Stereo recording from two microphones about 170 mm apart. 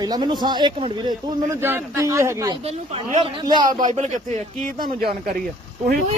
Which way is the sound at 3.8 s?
45° right (ahead or behind).